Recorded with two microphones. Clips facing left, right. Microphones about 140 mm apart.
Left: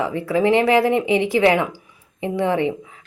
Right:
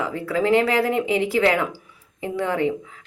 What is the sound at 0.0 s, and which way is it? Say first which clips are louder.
Speech: left 4 dB; 20° left (ahead or behind).